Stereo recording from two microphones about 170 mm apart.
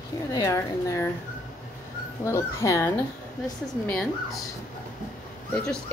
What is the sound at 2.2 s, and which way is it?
Speech, 15° left (ahead or behind).